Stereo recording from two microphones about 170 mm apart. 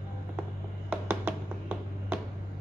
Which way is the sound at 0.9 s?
10° right (ahead or behind).